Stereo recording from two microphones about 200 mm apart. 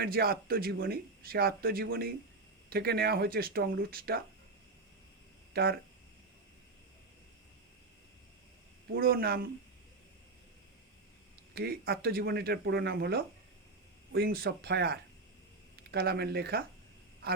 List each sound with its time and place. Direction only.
0.0 s speech: 50° right (ahead or behind)
5.5 s speech: 50° right (ahead or behind)
8.9 s speech: 50° right (ahead or behind)
11.5 s speech: 50° right (ahead or behind)